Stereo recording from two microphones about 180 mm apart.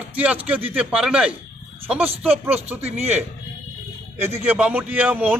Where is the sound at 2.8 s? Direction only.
35° right (ahead or behind).